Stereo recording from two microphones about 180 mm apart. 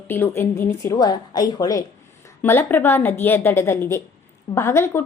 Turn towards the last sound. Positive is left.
turn(degrees=15)  # may be behind; listen again after turning